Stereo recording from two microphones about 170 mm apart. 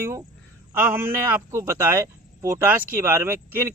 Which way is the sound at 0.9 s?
15° right (ahead or behind).